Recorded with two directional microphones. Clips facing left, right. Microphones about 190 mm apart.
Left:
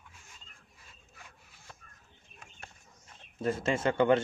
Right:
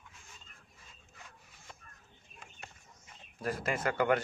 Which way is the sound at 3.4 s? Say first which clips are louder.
Left 4 dB; 25° left (ahead or behind).